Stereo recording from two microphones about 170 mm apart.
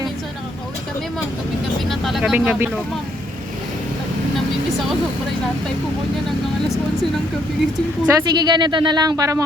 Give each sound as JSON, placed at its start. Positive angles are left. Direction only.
{"t": 1.9, "sound": "speech", "side_deg": 0}
{"t": 8.1, "sound": "speech", "side_deg": -25}